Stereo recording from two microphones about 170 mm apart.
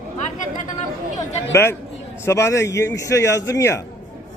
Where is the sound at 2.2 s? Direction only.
15° left (ahead or behind).